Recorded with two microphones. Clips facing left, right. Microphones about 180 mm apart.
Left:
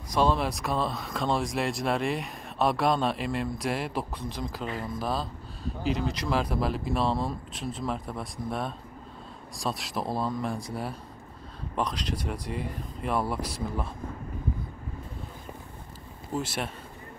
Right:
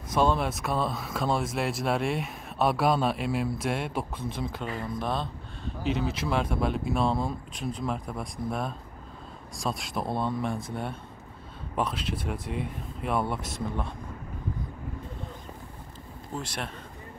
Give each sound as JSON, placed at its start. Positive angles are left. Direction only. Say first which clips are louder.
{"t": 0.1, "sound": "speech", "louder": "even", "side_deg": 0}
{"t": 16.3, "sound": "speech", "louder": "left 4 dB", "side_deg": 5}